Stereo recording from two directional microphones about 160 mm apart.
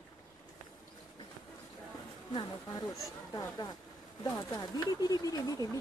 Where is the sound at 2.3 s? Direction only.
30° left (ahead or behind).